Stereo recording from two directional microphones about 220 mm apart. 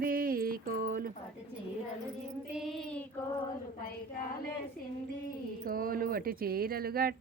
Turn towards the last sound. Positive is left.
turn(degrees=-45)  # may be behind; listen again after turning